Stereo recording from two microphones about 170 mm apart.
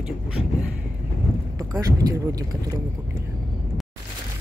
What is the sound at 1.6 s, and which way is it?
Speech, 20° right (ahead or behind).